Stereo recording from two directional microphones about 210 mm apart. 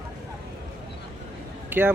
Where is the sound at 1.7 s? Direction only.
10° right (ahead or behind).